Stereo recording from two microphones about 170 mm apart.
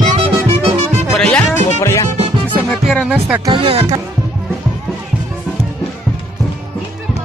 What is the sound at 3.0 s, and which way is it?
Music, 10° right (ahead or behind).